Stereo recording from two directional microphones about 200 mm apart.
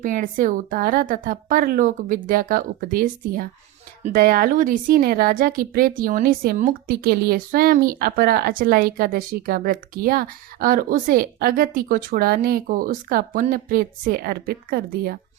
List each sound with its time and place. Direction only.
0.0 s a woman's voice: 40° right (ahead or behind)